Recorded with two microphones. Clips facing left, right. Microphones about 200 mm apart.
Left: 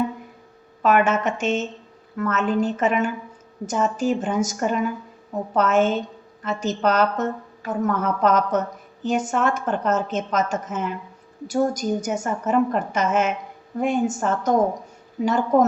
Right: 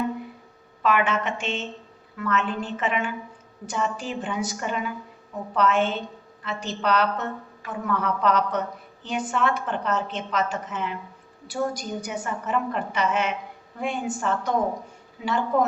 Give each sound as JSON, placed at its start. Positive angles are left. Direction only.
{"t": 0.8, "sound": "a woman's voice", "side_deg": 45}